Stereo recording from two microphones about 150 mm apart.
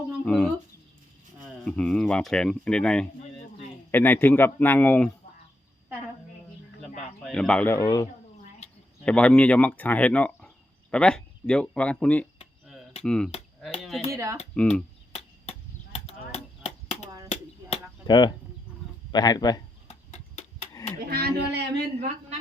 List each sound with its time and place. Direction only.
0.3 s speech: 5° left (ahead or behind)
1.6 s speech: 5° left (ahead or behind)
7.3 s speech: 5° left (ahead or behind); by 8.0 s 20° left (ahead or behind)
8.6 s a sound: 45° left (ahead or behind)
9.0 s speech: 10° left (ahead or behind)
14.1 s speech: 20° right (ahead or behind)
14.5 s speech: 5° left (ahead or behind)
15.1 s chop: 45° left (ahead or behind)
18.0 s speech: 30° left (ahead or behind)
19.9 s tick-tock: 50° left (ahead or behind)
21.0 s a sound: 90° right
21.9 s a sound: 45° right (ahead or behind)